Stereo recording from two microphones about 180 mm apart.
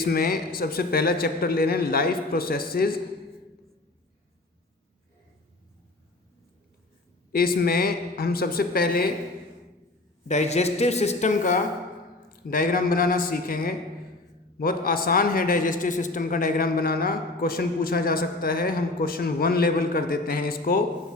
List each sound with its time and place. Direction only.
0.0 s speech: 55° left (ahead or behind)
7.3 s speech: 55° left (ahead or behind)
10.2 s a man's voice: 40° left (ahead or behind); by 20.8 s 55° left (ahead or behind)